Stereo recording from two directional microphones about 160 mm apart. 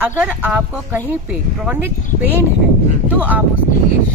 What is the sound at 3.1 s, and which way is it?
Speech, 10° right (ahead or behind).